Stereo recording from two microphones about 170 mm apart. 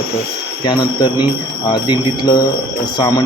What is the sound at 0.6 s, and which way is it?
Speech, 25° left (ahead or behind).